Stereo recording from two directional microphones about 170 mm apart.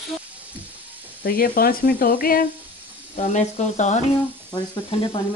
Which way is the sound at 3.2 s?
45° left (ahead or behind).